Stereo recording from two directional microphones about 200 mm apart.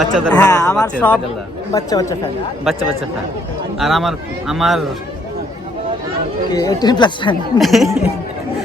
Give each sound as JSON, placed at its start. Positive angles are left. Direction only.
{"t": 0.0, "sound": "a man's voice", "side_deg": 5}
{"t": 0.4, "sound": "a woman's voice", "side_deg": 15}
{"t": 3.8, "sound": "a man's voice", "side_deg": 0}
{"t": 6.5, "sound": "speech", "side_deg": 20}
{"t": 7.6, "sound": "a man's voice", "side_deg": 0}